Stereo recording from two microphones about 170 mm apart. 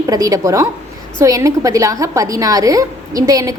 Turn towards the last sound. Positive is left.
turn(degrees=-20)  # may be behind; listen again after turning